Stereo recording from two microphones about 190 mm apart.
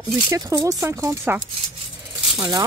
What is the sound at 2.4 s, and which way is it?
Speech, 20° right (ahead or behind).